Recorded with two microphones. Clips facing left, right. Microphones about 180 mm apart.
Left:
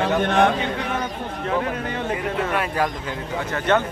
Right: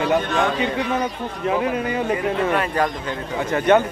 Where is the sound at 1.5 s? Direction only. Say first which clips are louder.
Right 4 dB; 10° right (ahead or behind).